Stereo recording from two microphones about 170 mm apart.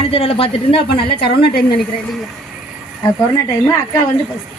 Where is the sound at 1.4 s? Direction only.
65° left (ahead or behind).